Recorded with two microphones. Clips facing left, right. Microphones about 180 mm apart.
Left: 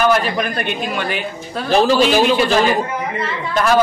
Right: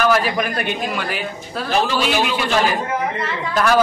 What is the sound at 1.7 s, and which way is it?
Speech, 40° left (ahead or behind).